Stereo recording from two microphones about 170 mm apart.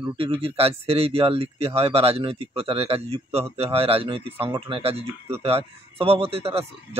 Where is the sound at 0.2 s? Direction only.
35° right (ahead or behind).